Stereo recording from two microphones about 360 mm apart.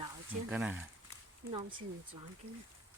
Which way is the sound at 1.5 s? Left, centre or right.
Centre.